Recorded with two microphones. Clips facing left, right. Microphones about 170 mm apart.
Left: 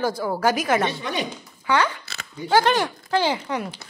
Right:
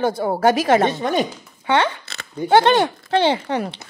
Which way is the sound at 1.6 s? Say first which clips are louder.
Right 3 dB; 25° right (ahead or behind).